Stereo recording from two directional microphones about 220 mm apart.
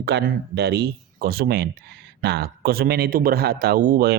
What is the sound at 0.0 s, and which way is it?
A man's voice, 50° right (ahead or behind).